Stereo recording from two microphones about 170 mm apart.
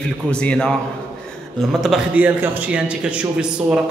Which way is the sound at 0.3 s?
5° left (ahead or behind).